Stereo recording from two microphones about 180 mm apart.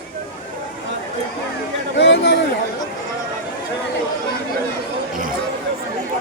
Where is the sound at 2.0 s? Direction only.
80° left.